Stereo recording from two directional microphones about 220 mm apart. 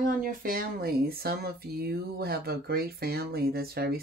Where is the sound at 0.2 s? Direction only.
40° right (ahead or behind).